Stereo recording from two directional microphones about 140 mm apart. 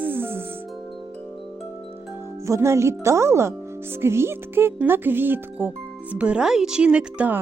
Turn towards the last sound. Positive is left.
turn(degrees=-10)  # may be behind; listen again after turning